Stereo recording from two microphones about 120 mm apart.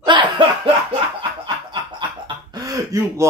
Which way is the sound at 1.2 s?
40° right (ahead or behind).